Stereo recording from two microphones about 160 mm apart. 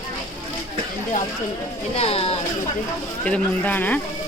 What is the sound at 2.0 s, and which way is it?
Speech, 40° left (ahead or behind).